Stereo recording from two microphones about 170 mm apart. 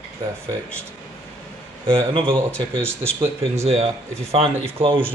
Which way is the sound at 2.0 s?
30° right (ahead or behind).